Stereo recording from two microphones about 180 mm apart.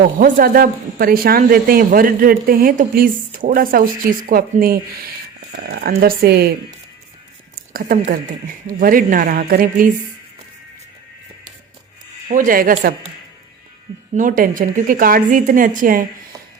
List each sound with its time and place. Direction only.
0.2 s speech: 55° right (ahead or behind)
7.7 s speech: 50° right (ahead or behind)
12.3 s speech: 50° right (ahead or behind)
14.2 s speech: 50° right (ahead or behind)